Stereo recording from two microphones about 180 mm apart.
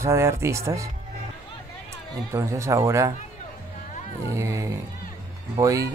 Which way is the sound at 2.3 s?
15° right (ahead or behind).